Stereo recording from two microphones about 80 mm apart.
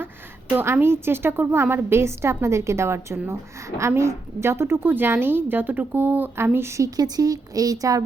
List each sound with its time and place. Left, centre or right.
0.5 s a woman's voice: right